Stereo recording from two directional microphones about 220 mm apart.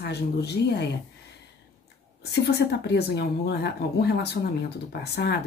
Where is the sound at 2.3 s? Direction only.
50° left (ahead or behind).